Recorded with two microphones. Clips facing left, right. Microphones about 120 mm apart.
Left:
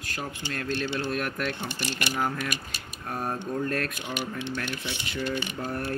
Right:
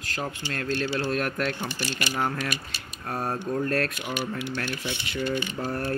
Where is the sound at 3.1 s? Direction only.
Centre (ahead or behind).